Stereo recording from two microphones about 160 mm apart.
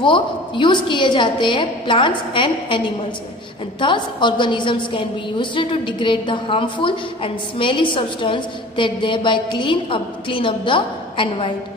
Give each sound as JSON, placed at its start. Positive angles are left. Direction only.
{"t": 0.0, "sound": "a woman's voice", "side_deg": 30}
{"t": 3.8, "sound": "a woman's voice", "side_deg": 30}